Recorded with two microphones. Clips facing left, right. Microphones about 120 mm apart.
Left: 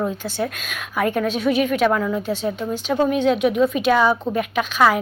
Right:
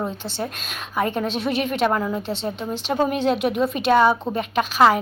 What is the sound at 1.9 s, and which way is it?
Speech, 15° right (ahead or behind).